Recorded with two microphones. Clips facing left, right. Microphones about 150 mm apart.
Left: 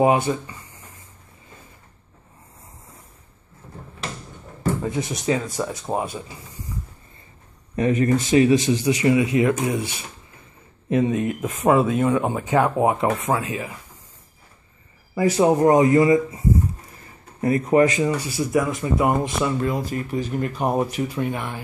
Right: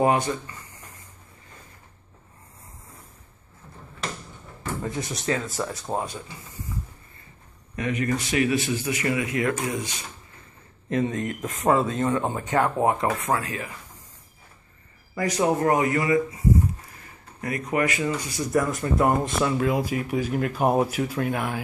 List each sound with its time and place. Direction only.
0.0 s speech: 15° left (ahead or behind)
4.8 s speech: 20° left (ahead or behind)
7.7 s speech: 35° left (ahead or behind)
15.1 s speech: 25° left (ahead or behind)
18.5 s speech: centre (ahead or behind)